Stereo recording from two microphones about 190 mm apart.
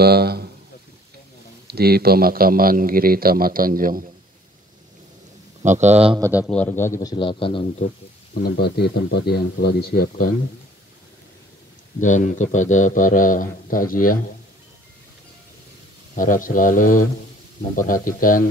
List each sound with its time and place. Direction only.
0.0 s speech: 55° right (ahead or behind)
1.7 s a man's voice: 55° right (ahead or behind)
5.6 s speech: 40° right (ahead or behind)
6.1 s a man's voice: 15° right (ahead or behind)
6.4 s a man's voice: 5° left (ahead or behind); by 7.6 s 25° left (ahead or behind)
8.4 s a man's voice: 55° left (ahead or behind)
12.0 s a man's voice: 40° left (ahead or behind)
16.2 s a man's voice: 45° left (ahead or behind)